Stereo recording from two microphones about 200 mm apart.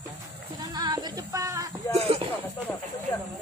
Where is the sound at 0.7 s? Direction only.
20° right (ahead or behind).